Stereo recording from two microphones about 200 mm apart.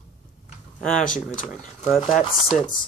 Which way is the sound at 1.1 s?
5° left (ahead or behind).